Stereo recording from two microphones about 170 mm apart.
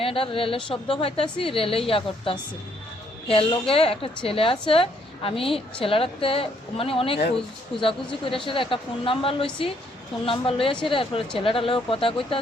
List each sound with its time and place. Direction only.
0.0 s a woman's voice: 30° left (ahead or behind)